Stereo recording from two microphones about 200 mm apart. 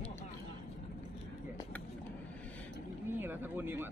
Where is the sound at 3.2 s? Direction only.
10° right (ahead or behind).